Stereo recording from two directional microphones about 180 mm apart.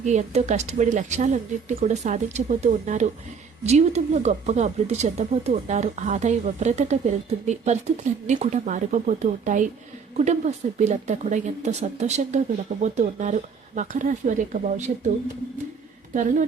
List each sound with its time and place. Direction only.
0.0 s speech: 40° right (ahead or behind)
16.1 s speech: 45° right (ahead or behind)